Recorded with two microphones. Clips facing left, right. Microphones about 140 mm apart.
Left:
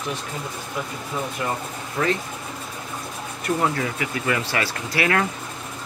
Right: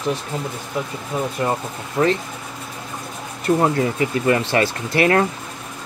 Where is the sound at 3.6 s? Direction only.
30° right (ahead or behind).